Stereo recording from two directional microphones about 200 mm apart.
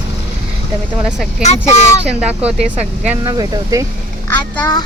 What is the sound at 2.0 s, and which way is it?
Speech, 5° right (ahead or behind).